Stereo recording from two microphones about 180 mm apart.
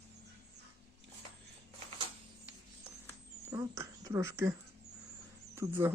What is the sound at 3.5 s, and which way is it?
Speech, 15° right (ahead or behind).